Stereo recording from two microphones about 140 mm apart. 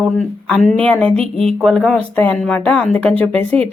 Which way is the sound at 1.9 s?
10° left (ahead or behind).